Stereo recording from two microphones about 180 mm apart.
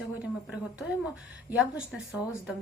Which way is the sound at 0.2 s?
5° right (ahead or behind).